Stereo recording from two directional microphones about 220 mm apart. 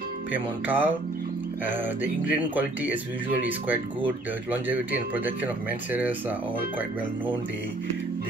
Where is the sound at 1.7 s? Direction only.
10° right (ahead or behind).